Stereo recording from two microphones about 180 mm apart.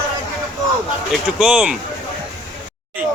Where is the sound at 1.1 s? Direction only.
Centre (ahead or behind).